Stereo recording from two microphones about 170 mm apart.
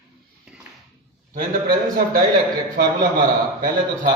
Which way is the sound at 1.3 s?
60° right (ahead or behind).